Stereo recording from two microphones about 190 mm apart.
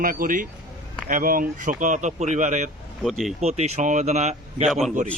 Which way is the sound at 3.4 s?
35° right (ahead or behind).